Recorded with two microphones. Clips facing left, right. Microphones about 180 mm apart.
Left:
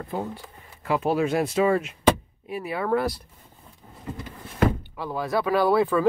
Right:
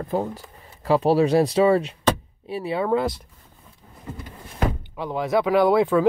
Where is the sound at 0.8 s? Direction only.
35° right (ahead or behind).